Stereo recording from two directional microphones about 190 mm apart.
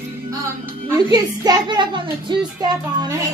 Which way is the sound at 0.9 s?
20° right (ahead or behind).